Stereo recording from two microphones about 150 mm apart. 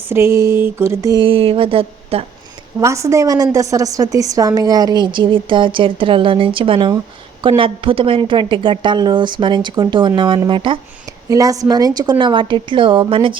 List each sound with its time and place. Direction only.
0.1 s a sound: 20° right (ahead or behind)
1.2 s a woman's voice: 40° right (ahead or behind)
2.8 s a woman's voice: 20° right (ahead or behind)
11.3 s a woman's voice: 20° right (ahead or behind)